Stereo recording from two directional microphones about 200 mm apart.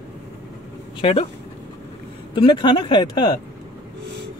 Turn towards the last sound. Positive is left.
turn(degrees=20)  # may be behind; listen again after turning